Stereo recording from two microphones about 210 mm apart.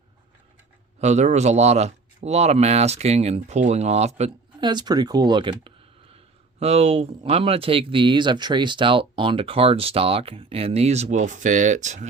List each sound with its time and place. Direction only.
0.9 s speech: 35° right (ahead or behind)